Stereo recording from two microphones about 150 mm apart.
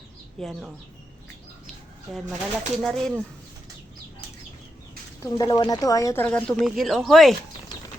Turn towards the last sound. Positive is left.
turn(degrees=0)  # may be behind; listen again after turning